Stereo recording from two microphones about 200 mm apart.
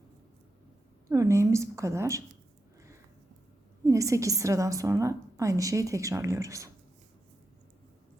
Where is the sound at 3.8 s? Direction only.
15° right (ahead or behind).